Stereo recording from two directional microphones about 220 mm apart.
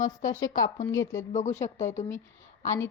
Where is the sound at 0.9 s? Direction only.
15° left (ahead or behind).